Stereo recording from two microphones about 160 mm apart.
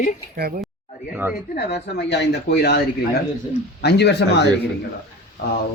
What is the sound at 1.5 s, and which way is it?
Speech, 90° left.